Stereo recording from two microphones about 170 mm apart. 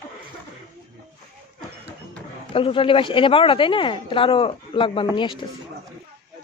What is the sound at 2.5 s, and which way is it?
A woman's voice, 30° left (ahead or behind).